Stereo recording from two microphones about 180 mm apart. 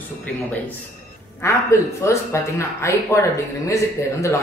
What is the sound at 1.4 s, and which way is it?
Speech, 15° left (ahead or behind).